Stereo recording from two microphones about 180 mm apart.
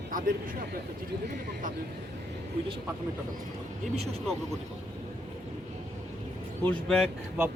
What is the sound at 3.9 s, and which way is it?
Speech, 35° right (ahead or behind).